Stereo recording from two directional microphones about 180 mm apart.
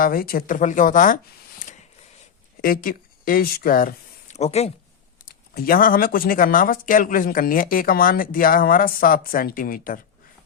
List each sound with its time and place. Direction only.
0.0 s speech: 55° left (ahead or behind)
4.4 s speech: 35° left (ahead or behind)
5.2 s speech: 55° left (ahead or behind)